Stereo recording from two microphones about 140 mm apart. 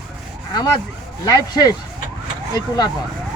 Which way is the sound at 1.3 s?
25° left (ahead or behind).